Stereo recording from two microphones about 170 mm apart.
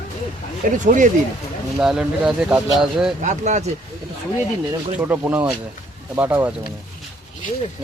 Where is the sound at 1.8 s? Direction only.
5° right (ahead or behind).